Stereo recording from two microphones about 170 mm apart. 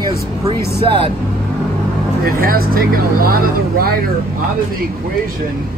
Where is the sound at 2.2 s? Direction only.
60° right (ahead or behind).